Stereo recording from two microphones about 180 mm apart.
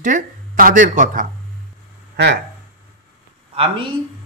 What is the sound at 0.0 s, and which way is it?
Speech, 50° right (ahead or behind).